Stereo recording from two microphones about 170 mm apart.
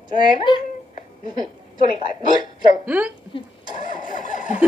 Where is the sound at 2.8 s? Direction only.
10° right (ahead or behind).